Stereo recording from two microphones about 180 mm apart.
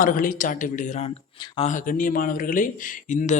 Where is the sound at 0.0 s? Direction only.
50° left (ahead or behind).